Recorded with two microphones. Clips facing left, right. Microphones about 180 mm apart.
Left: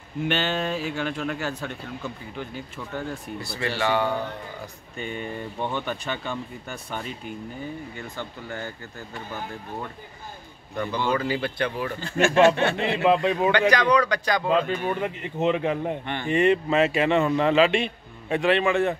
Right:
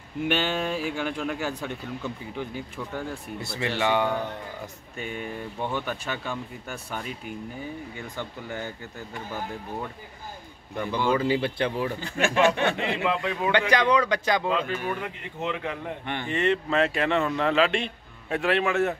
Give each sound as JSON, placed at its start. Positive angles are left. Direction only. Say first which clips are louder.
{"t": 0.3, "sound": "speech", "louder": "even", "side_deg": -10}
{"t": 4.9, "sound": "a man's voice", "louder": "left 2 dB", "side_deg": -5}
{"t": 8.2, "sound": "speech", "louder": "right 1 dB", "side_deg": -15}
{"t": 11.0, "sound": "speech", "louder": "right 1 dB", "side_deg": -10}
{"t": 11.2, "sound": "speech", "louder": "right 2 dB", "side_deg": -25}
{"t": 12.0, "sound": "speech", "louder": "left 5 dB", "side_deg": -15}
{"t": 13.0, "sound": "speech", "louder": "left 9 dB", "side_deg": 20}
{"t": 13.5, "sound": "speech", "louder": "even", "side_deg": -25}
{"t": 14.5, "sound": "a man's voice", "louder": "left 4 dB", "side_deg": 25}